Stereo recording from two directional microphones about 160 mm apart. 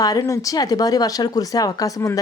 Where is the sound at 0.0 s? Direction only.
20° left (ahead or behind).